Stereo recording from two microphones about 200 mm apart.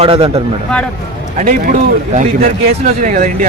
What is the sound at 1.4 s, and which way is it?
Speech, 40° right (ahead or behind).